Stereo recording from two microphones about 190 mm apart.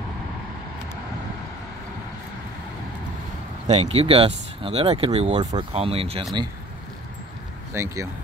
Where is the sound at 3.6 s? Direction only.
35° right (ahead or behind).